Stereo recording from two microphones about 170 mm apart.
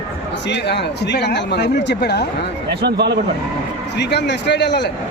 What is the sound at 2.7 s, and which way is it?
Speech, 80° right.